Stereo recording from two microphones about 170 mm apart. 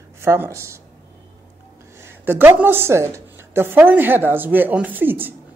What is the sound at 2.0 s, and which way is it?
A woman's voice, 10° right (ahead or behind).